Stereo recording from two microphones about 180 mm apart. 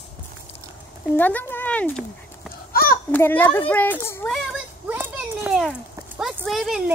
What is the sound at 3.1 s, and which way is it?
Speech, 10° left (ahead or behind).